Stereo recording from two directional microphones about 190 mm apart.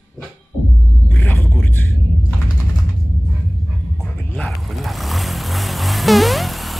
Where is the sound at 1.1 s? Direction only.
10° left (ahead or behind).